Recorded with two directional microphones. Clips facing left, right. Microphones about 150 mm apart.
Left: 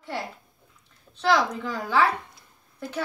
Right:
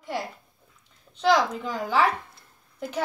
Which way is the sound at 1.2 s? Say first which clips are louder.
Right 1 dB; 15° right (ahead or behind).